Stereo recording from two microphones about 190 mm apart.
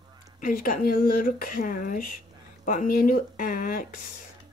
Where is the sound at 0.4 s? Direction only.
45° left (ahead or behind).